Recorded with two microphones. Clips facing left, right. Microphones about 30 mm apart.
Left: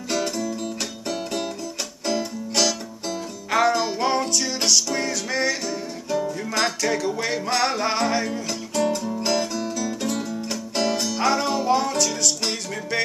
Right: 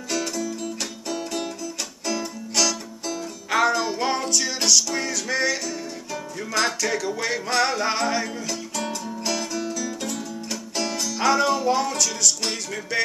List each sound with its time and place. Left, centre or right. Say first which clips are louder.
0.1 s music: left 2 dB; left
2.0 s music: left 3 dB; centre
3.4 s music: left 1 dB; centre
9.2 s music: left 1 dB; left
11.1 s music: right 4 dB; centre